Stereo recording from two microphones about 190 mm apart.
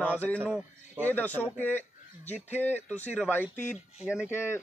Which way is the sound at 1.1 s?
10° left (ahead or behind).